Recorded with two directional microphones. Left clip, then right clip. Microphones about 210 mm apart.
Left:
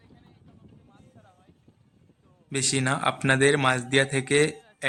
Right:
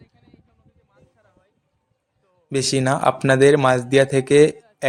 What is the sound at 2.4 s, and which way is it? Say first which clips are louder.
Speech: right 6 dB; 15° right (ahead or behind).